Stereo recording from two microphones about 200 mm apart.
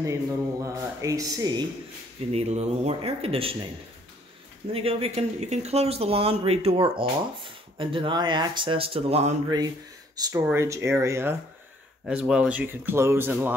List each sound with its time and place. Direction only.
0.0 s speech: 15° right (ahead or behind)
2.3 s speech: 35° right (ahead or behind)
4.7 s speech: 30° right (ahead or behind)
10.1 s speech: 20° right (ahead or behind)